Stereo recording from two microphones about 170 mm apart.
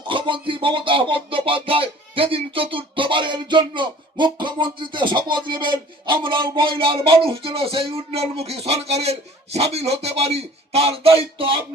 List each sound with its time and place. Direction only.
0.1 s music: 30° right (ahead or behind)